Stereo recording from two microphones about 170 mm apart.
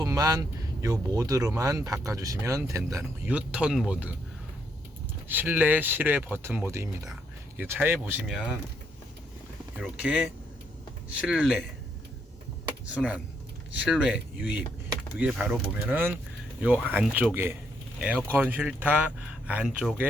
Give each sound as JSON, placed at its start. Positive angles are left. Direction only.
{"t": 0.0, "sound": "speech", "side_deg": -20}
{"t": 5.3, "sound": "speech", "side_deg": -10}
{"t": 8.3, "sound": "speech", "side_deg": 5}
{"t": 9.7, "sound": "speech", "side_deg": 0}
{"t": 12.9, "sound": "speech", "side_deg": -5}
{"t": 15.2, "sound": "speech", "side_deg": -5}